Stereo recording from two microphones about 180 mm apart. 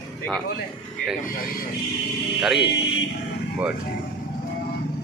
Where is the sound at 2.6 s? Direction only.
75° left (ahead or behind).